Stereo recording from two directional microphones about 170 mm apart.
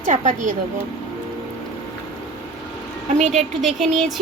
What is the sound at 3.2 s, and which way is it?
Speech, 40° right (ahead or behind).